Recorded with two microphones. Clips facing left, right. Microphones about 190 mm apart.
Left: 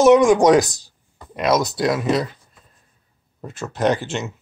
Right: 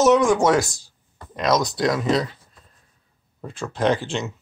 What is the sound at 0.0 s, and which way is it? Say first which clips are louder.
Speech: left 4 dB; 15° left (ahead or behind).